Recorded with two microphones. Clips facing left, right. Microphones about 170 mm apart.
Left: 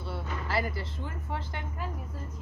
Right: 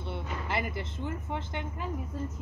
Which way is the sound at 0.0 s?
20° right (ahead or behind).